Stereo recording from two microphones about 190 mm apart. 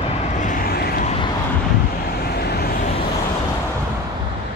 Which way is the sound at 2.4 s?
55° left (ahead or behind).